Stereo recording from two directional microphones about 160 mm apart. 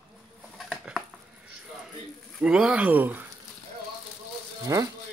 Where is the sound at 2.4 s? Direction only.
5° right (ahead or behind).